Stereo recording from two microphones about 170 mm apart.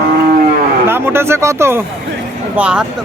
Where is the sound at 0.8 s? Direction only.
15° right (ahead or behind).